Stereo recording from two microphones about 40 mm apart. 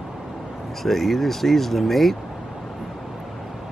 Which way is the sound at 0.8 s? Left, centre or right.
Centre.